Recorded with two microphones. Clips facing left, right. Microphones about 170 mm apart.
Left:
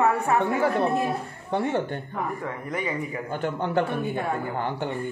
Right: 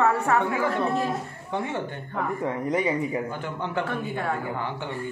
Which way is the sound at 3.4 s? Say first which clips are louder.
Left 4 dB; 40° left (ahead or behind).